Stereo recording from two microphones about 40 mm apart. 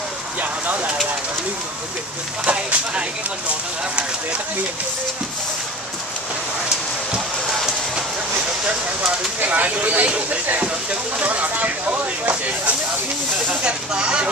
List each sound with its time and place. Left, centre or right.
2.4 s speech: right
9.4 s speech: right
13.5 s speech: right